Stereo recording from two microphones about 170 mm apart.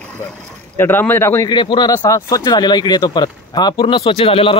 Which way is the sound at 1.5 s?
25° left (ahead or behind).